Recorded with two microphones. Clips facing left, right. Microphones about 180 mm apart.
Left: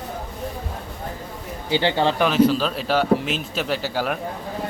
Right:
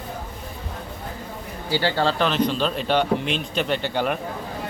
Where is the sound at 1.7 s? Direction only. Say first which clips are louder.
Left 2 dB; 20° left (ahead or behind).